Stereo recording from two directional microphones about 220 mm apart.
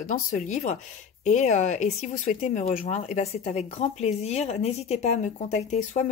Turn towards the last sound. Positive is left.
turn(degrees=35)  # may be behind; listen again after turning